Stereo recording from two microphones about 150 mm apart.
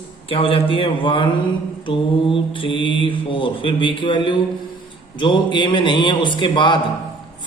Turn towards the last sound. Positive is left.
turn(degrees=30)  # may be behind; listen again after turning